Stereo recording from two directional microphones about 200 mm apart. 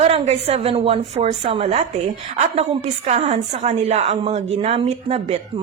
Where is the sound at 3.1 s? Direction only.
30° right (ahead or behind).